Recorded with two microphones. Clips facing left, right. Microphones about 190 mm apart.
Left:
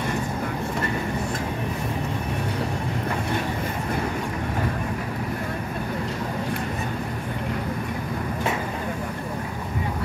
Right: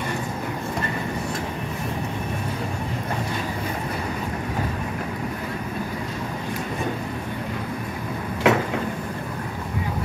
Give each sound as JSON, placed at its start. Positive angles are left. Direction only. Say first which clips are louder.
{"t": 8.5, "sound": "vehicle", "louder": "right 10 dB", "side_deg": -85}